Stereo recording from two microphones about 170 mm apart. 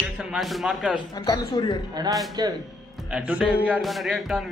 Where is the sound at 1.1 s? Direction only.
25° left (ahead or behind).